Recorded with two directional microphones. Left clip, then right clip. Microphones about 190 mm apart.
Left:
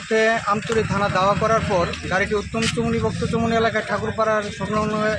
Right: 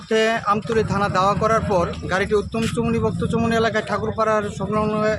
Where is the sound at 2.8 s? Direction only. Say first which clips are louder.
Right 1 dB; 10° right (ahead or behind).